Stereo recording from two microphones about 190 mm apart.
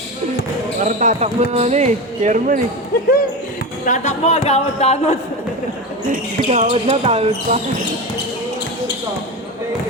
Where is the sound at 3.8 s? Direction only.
40° left (ahead or behind).